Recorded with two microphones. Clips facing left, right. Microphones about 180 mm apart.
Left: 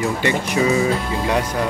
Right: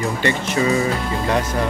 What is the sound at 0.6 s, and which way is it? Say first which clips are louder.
Speech: left 1 dB; 5° left (ahead or behind).